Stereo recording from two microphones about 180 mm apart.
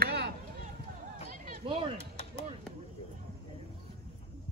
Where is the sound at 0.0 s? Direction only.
65° right (ahead or behind).